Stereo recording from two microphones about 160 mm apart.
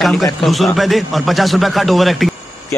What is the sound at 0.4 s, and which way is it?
Speech, centre (ahead or behind).